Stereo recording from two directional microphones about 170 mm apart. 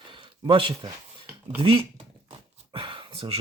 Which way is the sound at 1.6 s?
30° right (ahead or behind).